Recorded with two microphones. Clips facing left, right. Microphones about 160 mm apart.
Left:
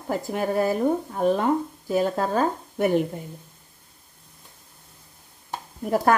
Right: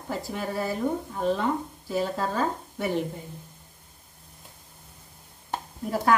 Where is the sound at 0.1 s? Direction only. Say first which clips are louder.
Left 6 dB; 50° left (ahead or behind).